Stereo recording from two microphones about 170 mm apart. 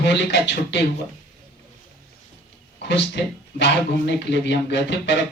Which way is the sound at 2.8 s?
90° left.